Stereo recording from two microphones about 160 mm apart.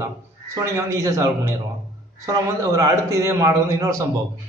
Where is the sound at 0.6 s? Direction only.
20° right (ahead or behind).